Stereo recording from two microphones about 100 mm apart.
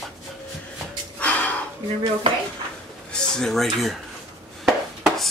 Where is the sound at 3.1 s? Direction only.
5° left (ahead or behind).